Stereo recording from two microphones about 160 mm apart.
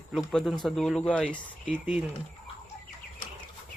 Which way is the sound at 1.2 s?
10° right (ahead or behind).